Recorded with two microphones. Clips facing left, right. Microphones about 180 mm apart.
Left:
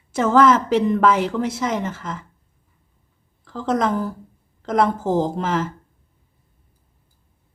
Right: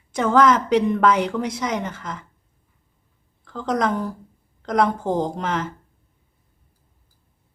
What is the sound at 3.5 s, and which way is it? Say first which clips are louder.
Speech: left 1 dB; 5° left (ahead or behind).